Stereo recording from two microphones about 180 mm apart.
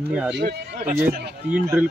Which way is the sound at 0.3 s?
65° right (ahead or behind).